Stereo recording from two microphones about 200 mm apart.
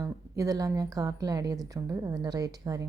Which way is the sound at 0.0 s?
15° right (ahead or behind).